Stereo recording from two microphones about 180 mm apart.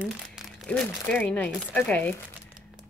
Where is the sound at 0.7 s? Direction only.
5° left (ahead or behind).